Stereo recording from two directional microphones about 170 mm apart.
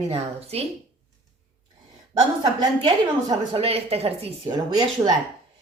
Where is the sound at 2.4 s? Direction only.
25° right (ahead or behind).